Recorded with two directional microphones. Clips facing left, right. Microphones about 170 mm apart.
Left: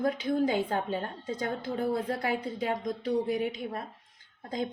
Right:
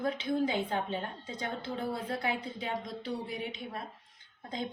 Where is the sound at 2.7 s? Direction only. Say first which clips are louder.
Left 6 dB; 45° left (ahead or behind).